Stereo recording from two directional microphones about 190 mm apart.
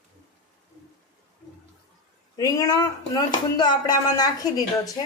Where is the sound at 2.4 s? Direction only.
20° left (ahead or behind).